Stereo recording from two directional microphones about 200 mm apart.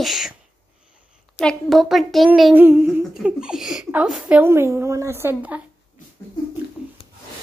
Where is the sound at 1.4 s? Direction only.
Centre (ahead or behind).